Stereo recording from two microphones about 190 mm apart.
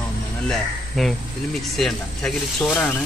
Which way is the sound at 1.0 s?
Centre (ahead or behind).